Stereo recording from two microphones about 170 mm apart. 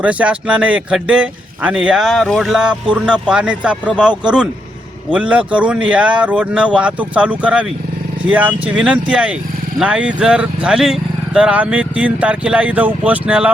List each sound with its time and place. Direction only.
0.0 s a man's voice: 10° right (ahead or behind)
5.1 s a man's voice: 5° right (ahead or behind)